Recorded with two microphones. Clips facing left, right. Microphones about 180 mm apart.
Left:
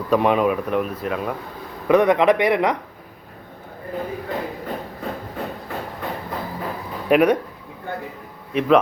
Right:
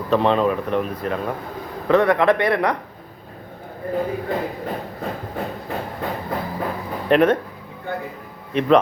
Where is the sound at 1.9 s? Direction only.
20° left (ahead or behind).